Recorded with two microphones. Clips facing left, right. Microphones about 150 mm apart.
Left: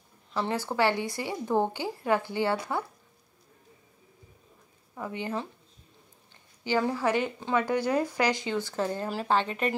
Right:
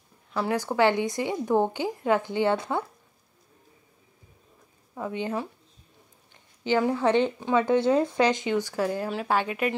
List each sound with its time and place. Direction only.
0.4 s a woman's voice: 15° right (ahead or behind)
4.9 s speech: 20° right (ahead or behind)
6.6 s speech: 20° right (ahead or behind)